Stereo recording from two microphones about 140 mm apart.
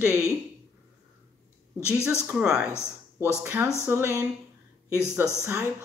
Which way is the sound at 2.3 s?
10° right (ahead or behind).